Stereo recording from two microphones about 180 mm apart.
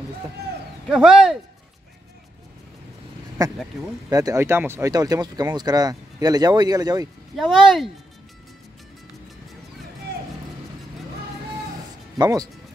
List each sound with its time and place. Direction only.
0.8 s speech: 5° right (ahead or behind)
4.1 s speech: 20° right (ahead or behind)
7.3 s speech: centre (ahead or behind)
12.2 s speech: 20° right (ahead or behind)